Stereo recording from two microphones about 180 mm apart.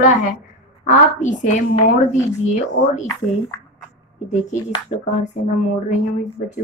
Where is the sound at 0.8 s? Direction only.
45° left (ahead or behind).